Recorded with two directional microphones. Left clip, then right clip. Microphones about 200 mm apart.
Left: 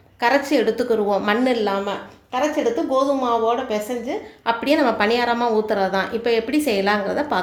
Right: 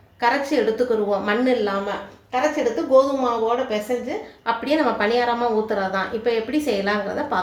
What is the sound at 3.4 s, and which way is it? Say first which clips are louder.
A woman's voice: even; 35° left (ahead or behind).